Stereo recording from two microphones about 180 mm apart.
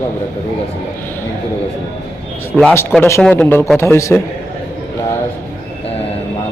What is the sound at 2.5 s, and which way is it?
Speech, 5° left (ahead or behind).